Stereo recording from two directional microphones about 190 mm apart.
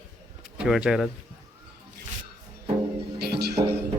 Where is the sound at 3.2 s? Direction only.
55° right (ahead or behind).